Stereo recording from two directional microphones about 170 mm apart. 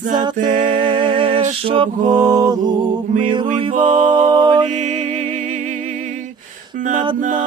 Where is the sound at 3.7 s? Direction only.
45° right (ahead or behind).